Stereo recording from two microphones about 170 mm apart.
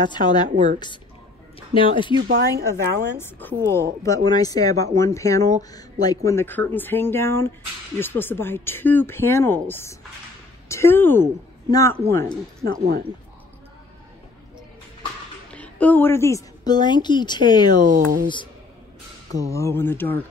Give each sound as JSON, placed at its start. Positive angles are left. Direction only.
{"t": 0.0, "sound": "speech", "side_deg": 25}
{"t": 0.5, "sound": "a woman's voice", "side_deg": -45}
{"t": 1.8, "sound": "speech", "side_deg": 30}
{"t": 2.1, "sound": "speech", "side_deg": -80}
{"t": 2.7, "sound": "speech", "side_deg": 15}
{"t": 12.6, "sound": "speech", "side_deg": -65}
{"t": 15.5, "sound": "a woman's voice", "side_deg": 10}
{"t": 17.8, "sound": "speech", "side_deg": -55}
{"t": 19.5, "sound": "speech", "side_deg": 15}